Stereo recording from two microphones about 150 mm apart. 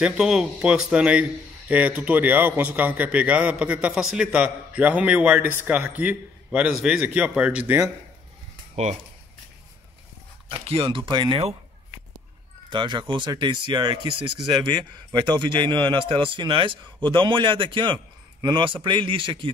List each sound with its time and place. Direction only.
0.0 s a man's voice: 5° right (ahead or behind)
10.5 s a man's voice: 40° right (ahead or behind)
12.6 s a man's voice: 30° right (ahead or behind)